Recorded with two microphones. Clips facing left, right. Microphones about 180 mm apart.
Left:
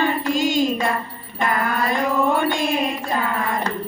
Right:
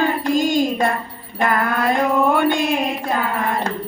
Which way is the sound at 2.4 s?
60° right (ahead or behind).